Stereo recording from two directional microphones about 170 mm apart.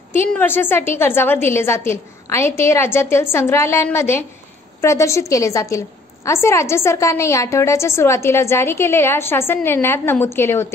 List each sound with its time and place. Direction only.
0.1 s a woman's voice: 10° left (ahead or behind)